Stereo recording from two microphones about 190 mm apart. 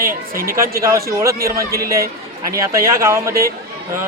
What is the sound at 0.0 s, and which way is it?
Speech, 50° right (ahead or behind).